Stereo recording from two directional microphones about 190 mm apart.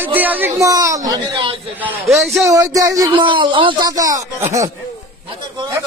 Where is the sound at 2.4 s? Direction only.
15° right (ahead or behind).